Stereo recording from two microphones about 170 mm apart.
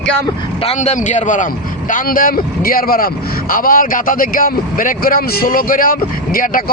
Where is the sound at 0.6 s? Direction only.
40° left (ahead or behind).